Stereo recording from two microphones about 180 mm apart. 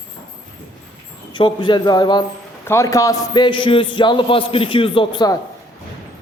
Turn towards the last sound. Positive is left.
turn(degrees=25)  # may be behind; listen again after turning